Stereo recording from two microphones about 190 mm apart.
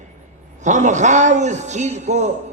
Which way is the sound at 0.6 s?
40° right (ahead or behind).